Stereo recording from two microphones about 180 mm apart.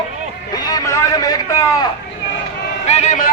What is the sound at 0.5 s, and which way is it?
A man's voice, 20° left (ahead or behind).